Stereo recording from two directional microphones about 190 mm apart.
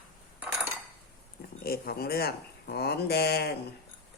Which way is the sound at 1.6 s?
55° left (ahead or behind).